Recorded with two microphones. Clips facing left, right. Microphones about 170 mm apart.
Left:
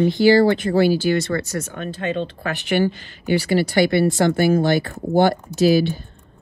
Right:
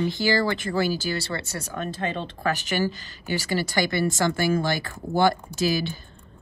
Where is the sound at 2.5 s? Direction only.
40° right (ahead or behind).